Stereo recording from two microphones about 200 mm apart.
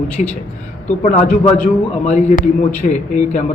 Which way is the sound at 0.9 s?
35° left (ahead or behind).